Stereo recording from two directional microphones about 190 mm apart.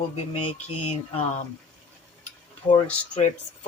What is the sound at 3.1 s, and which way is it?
Speech, 35° left (ahead or behind).